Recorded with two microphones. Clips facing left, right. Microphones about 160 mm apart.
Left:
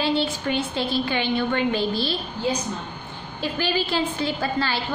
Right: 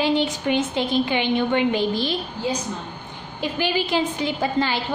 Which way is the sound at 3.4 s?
15° right (ahead or behind).